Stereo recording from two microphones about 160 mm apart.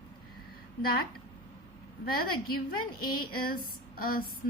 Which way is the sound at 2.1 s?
65° left (ahead or behind).